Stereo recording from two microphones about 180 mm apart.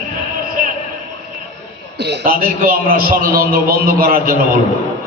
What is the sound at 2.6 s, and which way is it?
A man's voice, 50° right (ahead or behind).